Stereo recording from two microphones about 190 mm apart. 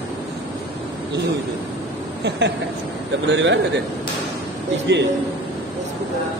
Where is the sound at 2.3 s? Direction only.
65° right (ahead or behind).